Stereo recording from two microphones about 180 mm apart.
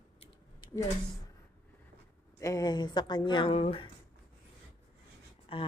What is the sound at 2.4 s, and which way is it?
Speech, 20° left (ahead or behind).